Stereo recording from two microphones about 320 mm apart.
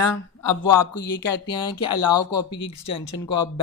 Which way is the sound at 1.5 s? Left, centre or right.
Centre.